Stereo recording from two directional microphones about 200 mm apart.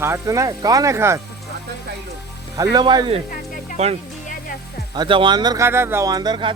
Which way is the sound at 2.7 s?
20° right (ahead or behind).